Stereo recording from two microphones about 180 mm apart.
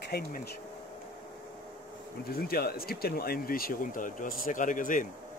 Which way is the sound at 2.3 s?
55° left (ahead or behind).